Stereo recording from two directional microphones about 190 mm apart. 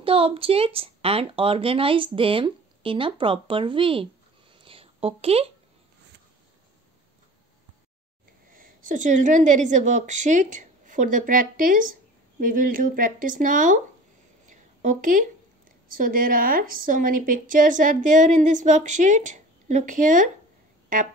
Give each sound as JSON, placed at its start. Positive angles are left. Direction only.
{"t": 0.0, "sound": "a woman's voice", "side_deg": -30}
{"t": 8.5, "sound": "a woman's voice", "side_deg": -45}
{"t": 14.5, "sound": "a sound", "side_deg": -40}
{"t": 15.9, "sound": "a woman's voice", "side_deg": -45}